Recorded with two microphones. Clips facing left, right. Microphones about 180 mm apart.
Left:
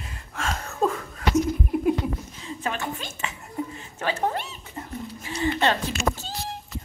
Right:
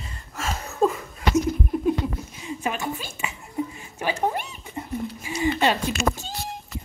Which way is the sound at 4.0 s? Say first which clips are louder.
Right 1 dB; 10° right (ahead or behind).